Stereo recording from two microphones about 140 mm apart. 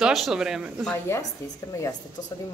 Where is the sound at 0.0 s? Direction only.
Centre (ahead or behind).